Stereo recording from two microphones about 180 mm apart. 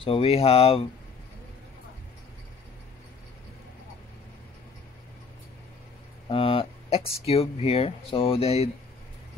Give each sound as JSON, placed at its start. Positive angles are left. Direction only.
{"t": 0.0, "sound": "speech", "side_deg": 30}
{"t": 6.2, "sound": "speech", "side_deg": 30}